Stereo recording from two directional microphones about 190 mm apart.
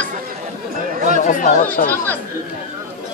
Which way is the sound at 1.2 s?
40° left (ahead or behind).